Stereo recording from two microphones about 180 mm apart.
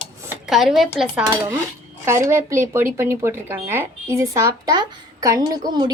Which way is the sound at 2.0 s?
15° right (ahead or behind).